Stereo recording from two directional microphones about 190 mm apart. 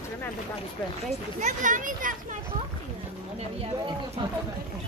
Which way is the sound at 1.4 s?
40° right (ahead or behind).